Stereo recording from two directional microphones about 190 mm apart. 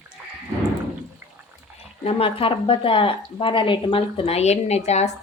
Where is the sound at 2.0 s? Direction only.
30° left (ahead or behind).